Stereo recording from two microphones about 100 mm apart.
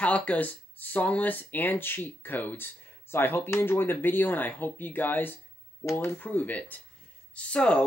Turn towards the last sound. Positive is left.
turn(degrees=10)  # may be behind; listen again after turning